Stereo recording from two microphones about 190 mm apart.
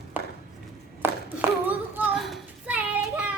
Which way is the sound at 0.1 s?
10° right (ahead or behind).